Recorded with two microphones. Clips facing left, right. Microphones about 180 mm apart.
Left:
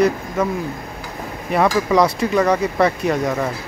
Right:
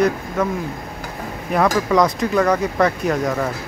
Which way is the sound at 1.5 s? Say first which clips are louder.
Left 1 dB; 5° left (ahead or behind).